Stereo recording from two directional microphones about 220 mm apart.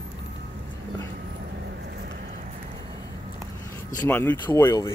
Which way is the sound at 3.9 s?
10° left (ahead or behind).